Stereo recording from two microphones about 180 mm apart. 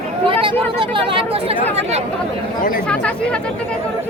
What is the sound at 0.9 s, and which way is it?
Speech, 30° right (ahead or behind).